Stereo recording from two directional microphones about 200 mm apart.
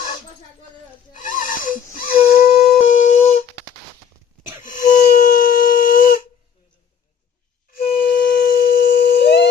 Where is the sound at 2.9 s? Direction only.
35° left (ahead or behind).